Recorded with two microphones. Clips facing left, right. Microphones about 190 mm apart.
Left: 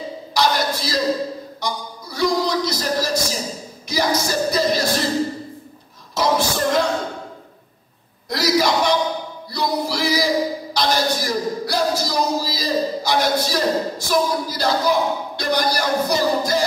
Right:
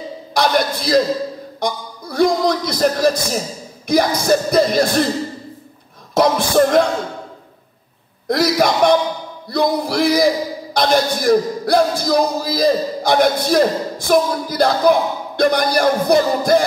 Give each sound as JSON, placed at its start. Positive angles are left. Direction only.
{"t": 0.3, "sound": "a sound", "side_deg": -55}
{"t": 3.8, "sound": "a man's voice", "side_deg": -55}
{"t": 6.1, "sound": "music", "side_deg": -55}
{"t": 8.3, "sound": "a sound", "side_deg": -55}
{"t": 9.5, "sound": "music", "side_deg": -55}
{"t": 10.7, "sound": "a man's voice", "side_deg": -55}